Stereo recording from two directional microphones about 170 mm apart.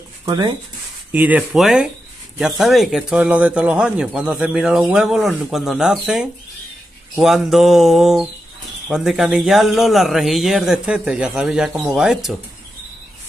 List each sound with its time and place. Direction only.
0.2 s speech: 25° right (ahead or behind)
1.1 s speech: 10° right (ahead or behind)